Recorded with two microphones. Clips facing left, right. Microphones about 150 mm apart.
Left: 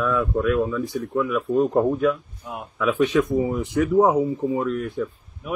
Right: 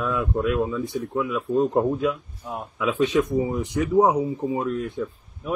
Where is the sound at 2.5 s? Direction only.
20° right (ahead or behind).